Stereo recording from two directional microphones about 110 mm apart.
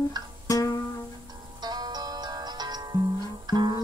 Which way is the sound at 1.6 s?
40° right (ahead or behind).